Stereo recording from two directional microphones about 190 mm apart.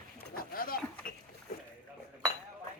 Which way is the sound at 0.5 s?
50° left (ahead or behind).